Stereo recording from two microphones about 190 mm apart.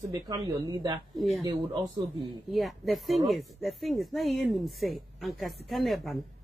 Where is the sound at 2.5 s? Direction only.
Centre (ahead or behind).